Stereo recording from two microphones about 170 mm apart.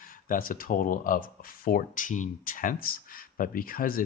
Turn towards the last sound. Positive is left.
turn(degrees=55)  # may be behind; listen again after turning